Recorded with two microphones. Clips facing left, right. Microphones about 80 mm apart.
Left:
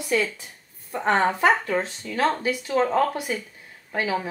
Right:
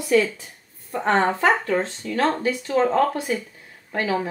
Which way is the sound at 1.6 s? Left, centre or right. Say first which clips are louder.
Right 3 dB; centre.